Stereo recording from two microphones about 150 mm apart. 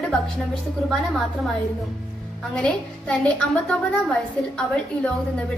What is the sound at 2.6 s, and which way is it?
A woman's voice, 10° left (ahead or behind).